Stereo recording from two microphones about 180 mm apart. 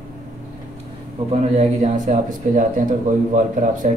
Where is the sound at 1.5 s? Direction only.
40° right (ahead or behind).